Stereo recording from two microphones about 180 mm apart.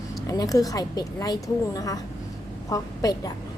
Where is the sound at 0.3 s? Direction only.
20° left (ahead or behind).